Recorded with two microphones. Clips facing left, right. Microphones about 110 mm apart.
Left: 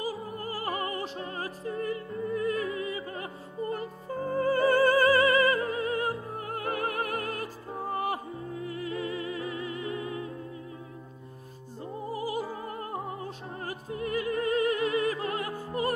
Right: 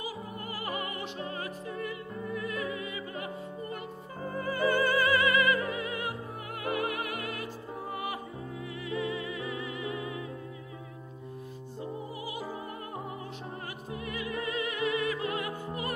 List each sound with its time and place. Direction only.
0.0 s music: 35° left (ahead or behind)
11.8 s music: 40° left (ahead or behind)
13.7 s opera: 40° left (ahead or behind)